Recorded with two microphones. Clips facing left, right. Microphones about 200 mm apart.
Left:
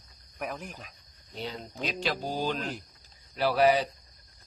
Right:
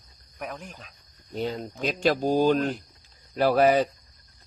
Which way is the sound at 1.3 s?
45° right (ahead or behind).